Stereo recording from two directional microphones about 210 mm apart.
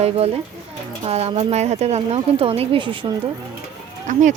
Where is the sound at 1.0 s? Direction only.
30° right (ahead or behind).